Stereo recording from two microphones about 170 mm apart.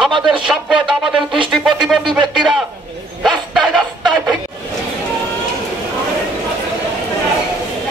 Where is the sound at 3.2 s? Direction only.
Centre (ahead or behind).